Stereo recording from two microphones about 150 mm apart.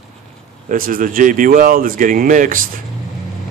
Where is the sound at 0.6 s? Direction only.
65° right (ahead or behind).